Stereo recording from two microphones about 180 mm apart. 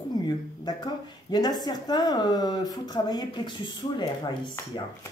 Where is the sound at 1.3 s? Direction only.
25° left (ahead or behind).